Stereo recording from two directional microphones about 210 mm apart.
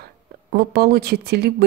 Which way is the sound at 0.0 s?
50° right (ahead or behind).